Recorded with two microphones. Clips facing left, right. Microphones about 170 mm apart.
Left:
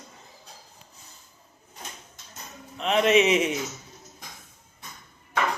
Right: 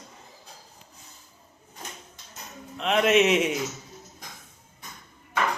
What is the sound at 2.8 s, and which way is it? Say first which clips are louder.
Speech: even; centre (ahead or behind).